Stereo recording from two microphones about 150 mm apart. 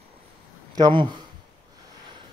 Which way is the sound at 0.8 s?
30° right (ahead or behind).